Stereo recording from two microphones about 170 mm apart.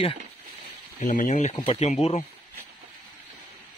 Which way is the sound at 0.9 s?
50° left (ahead or behind).